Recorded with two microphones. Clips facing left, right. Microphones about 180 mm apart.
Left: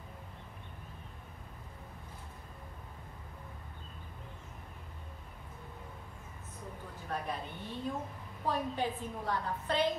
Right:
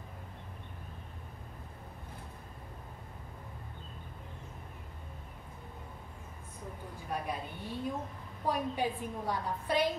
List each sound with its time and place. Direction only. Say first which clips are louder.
7.1 s a woman's voice: right 1 dB; 10° right (ahead or behind)